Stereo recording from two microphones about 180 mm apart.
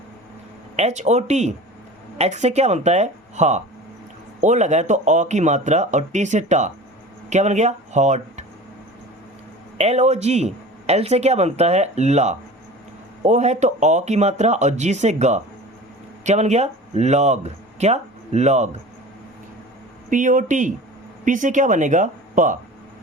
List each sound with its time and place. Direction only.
0.8 s speech: 40° right (ahead or behind)
9.7 s speech: 35° right (ahead or behind)
20.1 s a woman's voice: 45° right (ahead or behind)